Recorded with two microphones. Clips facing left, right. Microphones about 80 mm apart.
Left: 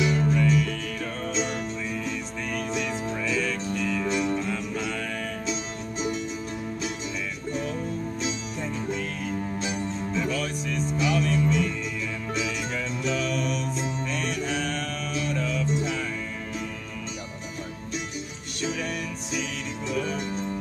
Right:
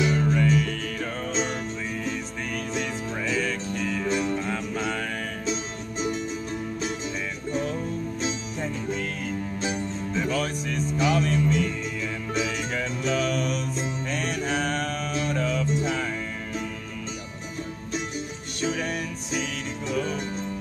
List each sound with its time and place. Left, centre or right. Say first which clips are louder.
0.0 s music: even; right
2.7 s music: left 1 dB; right
8.2 s music: right 1 dB; right
18.6 s music: right 2 dB; right